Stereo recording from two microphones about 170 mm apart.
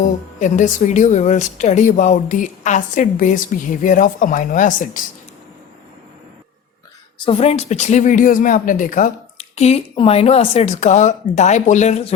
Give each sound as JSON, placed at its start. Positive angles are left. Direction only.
{"t": 0.0, "sound": "a woman's voice", "side_deg": 45}
{"t": 7.3, "sound": "a woman's voice", "side_deg": 35}